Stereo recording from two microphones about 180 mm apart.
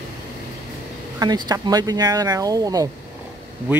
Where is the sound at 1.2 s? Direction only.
20° right (ahead or behind).